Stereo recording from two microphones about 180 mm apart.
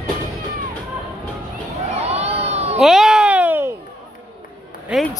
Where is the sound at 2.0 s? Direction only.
35° right (ahead or behind).